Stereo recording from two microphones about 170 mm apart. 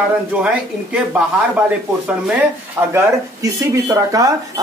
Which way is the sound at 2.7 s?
15° right (ahead or behind).